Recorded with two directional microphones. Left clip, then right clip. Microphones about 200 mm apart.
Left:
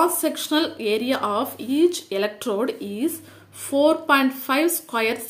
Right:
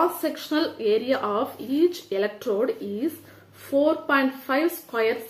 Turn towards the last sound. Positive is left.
turn(degrees=40)  # may be behind; listen again after turning